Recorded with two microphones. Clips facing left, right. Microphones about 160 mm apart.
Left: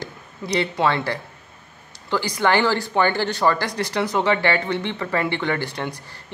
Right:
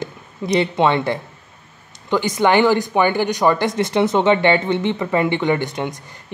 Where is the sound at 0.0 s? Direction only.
20° right (ahead or behind).